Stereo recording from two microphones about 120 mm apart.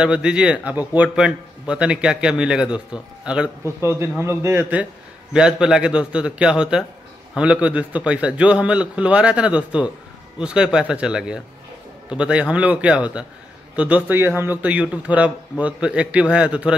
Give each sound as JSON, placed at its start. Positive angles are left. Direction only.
{"t": 0.0, "sound": "a man's voice", "side_deg": -10}
{"t": 3.8, "sound": "a man's voice", "side_deg": -20}
{"t": 5.3, "sound": "a man's voice", "side_deg": -5}